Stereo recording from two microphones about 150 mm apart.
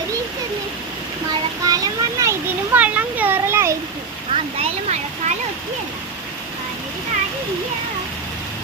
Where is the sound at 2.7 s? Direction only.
10° right (ahead or behind).